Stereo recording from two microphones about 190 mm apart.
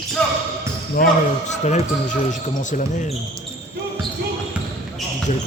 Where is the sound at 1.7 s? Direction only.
40° left (ahead or behind).